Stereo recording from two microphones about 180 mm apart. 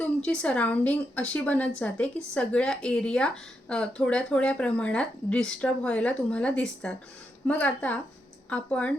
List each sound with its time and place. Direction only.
0.0 s speech: 5° left (ahead or behind)